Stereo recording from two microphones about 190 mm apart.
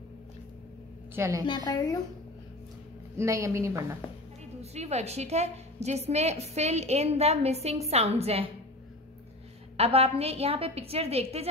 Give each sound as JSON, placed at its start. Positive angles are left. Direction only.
{"t": 1.1, "sound": "a woman's voice", "side_deg": -15}
{"t": 1.5, "sound": "a woman's voice", "side_deg": 20}
{"t": 3.2, "sound": "a woman's voice", "side_deg": -15}
{"t": 4.6, "sound": "a woman's voice", "side_deg": -35}
{"t": 9.8, "sound": "a woman's voice", "side_deg": -30}